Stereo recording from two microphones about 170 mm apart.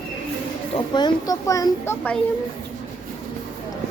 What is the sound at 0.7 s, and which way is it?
A child's voice, 25° left (ahead or behind).